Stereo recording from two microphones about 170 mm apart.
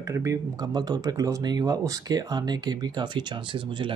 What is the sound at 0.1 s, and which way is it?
Speech, 15° right (ahead or behind).